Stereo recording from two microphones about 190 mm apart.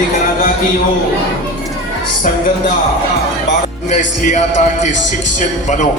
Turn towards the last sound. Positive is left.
turn(degrees=40)  # may be behind; listen again after turning